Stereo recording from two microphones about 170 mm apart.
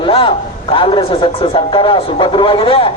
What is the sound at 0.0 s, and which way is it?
A man's voice, 30° left (ahead or behind).